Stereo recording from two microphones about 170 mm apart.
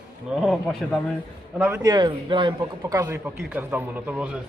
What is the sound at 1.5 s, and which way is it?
A man's voice, 15° right (ahead or behind).